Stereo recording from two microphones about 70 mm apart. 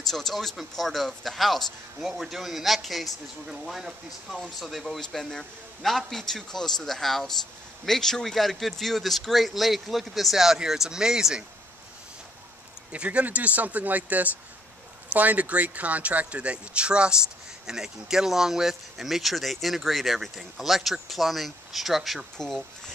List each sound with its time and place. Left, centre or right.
0.0 s speech: centre
12.9 s speech: centre